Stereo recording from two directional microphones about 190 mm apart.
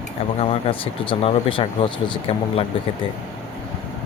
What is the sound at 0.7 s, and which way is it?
Speech, 30° left (ahead or behind).